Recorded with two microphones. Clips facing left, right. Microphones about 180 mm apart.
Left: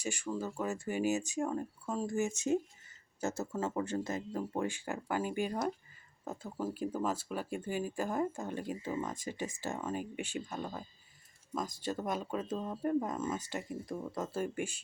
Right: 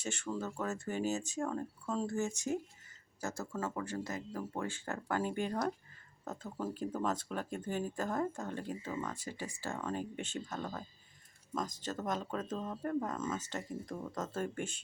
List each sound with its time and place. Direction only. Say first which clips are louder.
0.0 s speech: left 2 dB; 10° left (ahead or behind)